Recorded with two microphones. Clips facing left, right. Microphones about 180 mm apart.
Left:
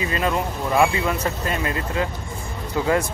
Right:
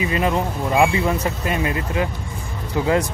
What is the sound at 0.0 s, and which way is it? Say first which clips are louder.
A man's voice: right 2 dB; 20° right (ahead or behind).